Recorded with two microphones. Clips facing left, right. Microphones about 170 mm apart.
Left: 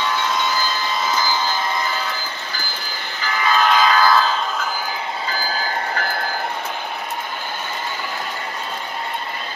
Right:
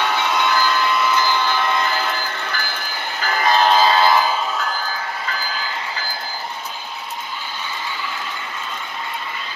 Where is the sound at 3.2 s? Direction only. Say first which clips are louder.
Right 2 dB; 45° right (ahead or behind); by 4.4 s 15° right (ahead or behind).